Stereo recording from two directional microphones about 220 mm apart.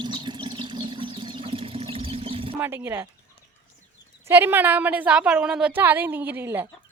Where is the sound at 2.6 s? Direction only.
10° right (ahead or behind).